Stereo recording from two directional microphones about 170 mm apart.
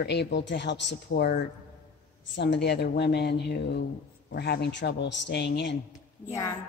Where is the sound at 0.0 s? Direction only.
80° left.